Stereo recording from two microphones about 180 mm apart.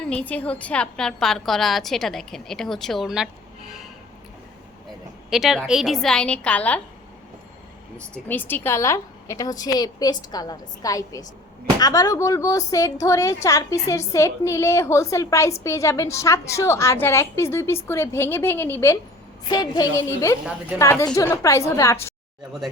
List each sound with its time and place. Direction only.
0.0 s a woman's voice: 5° left (ahead or behind)
5.3 s a woman's voice: centre (ahead or behind)
7.9 s a woman's voice: 10° left (ahead or behind)
19.5 s a woman's voice: 25° left (ahead or behind)